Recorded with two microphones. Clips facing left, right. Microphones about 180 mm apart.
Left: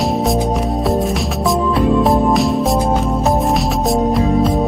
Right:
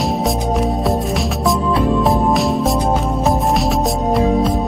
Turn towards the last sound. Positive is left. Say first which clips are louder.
# even
turn(degrees=0)  # may be behind; listen again after turning